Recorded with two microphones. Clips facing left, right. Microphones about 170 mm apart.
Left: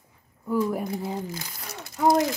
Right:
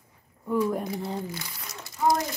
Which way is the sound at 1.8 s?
60° left (ahead or behind).